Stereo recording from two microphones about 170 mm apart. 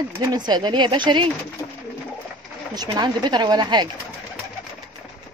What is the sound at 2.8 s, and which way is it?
Speech, 25° right (ahead or behind).